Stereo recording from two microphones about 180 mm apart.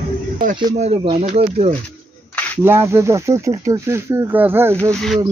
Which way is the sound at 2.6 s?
15° right (ahead or behind).